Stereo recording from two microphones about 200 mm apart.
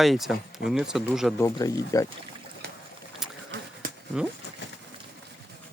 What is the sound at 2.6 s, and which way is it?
Boat, 55° right (ahead or behind).